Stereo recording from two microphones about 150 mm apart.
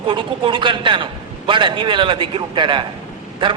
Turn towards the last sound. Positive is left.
turn(degrees=-35)  # may be behind; listen again after turning